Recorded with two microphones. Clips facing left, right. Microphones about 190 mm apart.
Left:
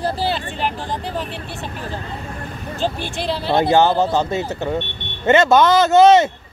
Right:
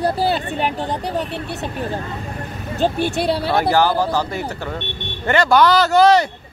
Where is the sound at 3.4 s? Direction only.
20° left (ahead or behind).